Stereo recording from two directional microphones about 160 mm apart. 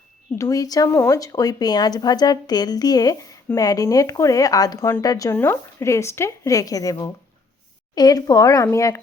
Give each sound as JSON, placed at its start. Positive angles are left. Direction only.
{"t": 0.3, "sound": "speech", "side_deg": 20}